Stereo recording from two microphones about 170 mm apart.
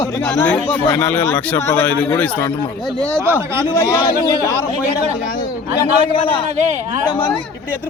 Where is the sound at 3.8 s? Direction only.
20° left (ahead or behind).